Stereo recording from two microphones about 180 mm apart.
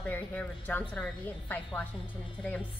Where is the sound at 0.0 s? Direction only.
10° left (ahead or behind).